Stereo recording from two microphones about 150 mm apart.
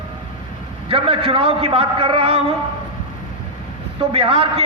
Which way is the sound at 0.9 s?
35° right (ahead or behind).